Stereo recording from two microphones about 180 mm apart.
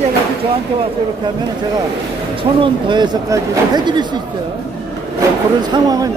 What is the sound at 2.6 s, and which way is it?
Speech, 25° right (ahead or behind).